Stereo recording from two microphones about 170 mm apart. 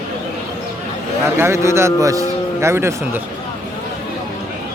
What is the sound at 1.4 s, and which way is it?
A man's voice, 15° right (ahead or behind).